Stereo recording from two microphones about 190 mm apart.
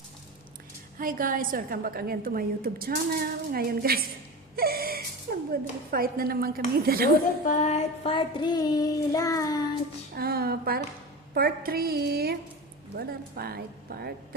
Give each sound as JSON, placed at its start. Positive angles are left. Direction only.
{"t": 0.9, "sound": "a woman's voice", "side_deg": -45}
{"t": 4.5, "sound": "gasp", "side_deg": -50}
{"t": 5.3, "sound": "a sound", "side_deg": -60}
{"t": 5.9, "sound": "a woman's voice", "side_deg": -50}
{"t": 7.4, "sound": "child singing", "side_deg": 40}
{"t": 10.2, "sound": "a woman's voice", "side_deg": -55}